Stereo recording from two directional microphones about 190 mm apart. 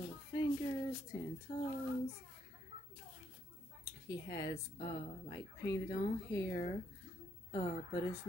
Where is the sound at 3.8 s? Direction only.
20° left (ahead or behind).